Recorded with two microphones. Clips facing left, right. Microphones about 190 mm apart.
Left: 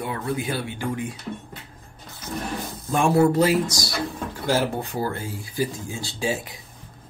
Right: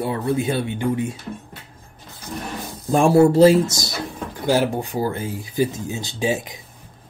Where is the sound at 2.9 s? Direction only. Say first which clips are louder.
Right 5 dB; 30° right (ahead or behind).